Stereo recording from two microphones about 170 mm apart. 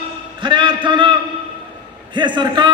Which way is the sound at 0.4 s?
30° right (ahead or behind).